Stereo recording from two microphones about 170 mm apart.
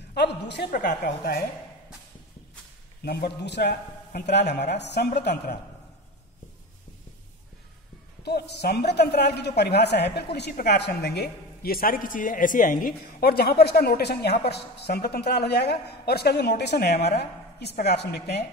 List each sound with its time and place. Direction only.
0.1 s a woman's voice: 85° left
0.7 s a woman's voice: 55° left (ahead or behind)
3.0 s a woman's voice: 70° left (ahead or behind)
8.2 s a woman's voice: 75° left (ahead or behind)